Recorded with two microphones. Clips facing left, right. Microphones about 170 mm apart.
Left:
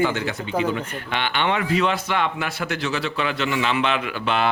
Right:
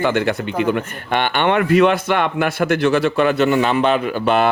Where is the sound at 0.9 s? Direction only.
50° right (ahead or behind).